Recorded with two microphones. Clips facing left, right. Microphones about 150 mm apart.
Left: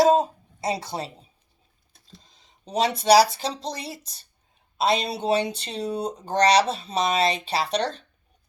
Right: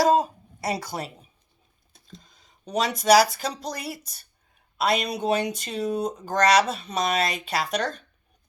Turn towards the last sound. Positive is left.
turn(degrees=30)  # may be behind; listen again after turning